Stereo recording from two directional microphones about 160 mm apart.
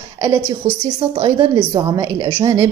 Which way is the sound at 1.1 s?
25° right (ahead or behind).